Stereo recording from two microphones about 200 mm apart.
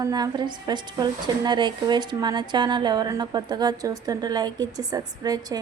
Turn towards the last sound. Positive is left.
turn(degrees=-20)  # may be behind; listen again after turning